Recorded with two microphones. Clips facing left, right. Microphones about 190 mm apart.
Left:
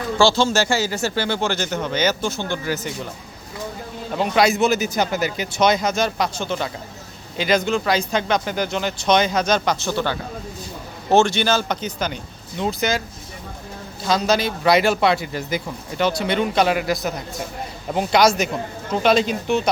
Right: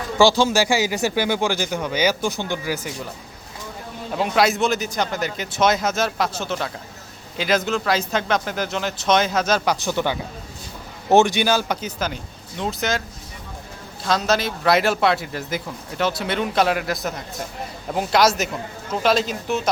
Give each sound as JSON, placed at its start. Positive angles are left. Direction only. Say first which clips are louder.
{"t": 0.2, "sound": "speech", "louder": "right 1 dB", "side_deg": -15}
{"t": 4.2, "sound": "a man's voice", "louder": "left 2 dB", "side_deg": 0}
{"t": 9.8, "sound": "speech", "louder": "even", "side_deg": -15}
{"t": 14.0, "sound": "a man's voice", "louder": "left 1 dB", "side_deg": 0}